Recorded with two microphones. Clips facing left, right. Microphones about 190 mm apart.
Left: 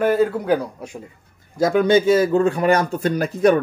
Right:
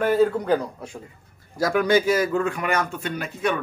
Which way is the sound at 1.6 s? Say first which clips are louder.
Left 4 dB; 25° left (ahead or behind).